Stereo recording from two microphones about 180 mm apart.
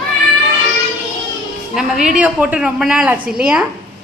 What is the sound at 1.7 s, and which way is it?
A woman's voice, 5° right (ahead or behind).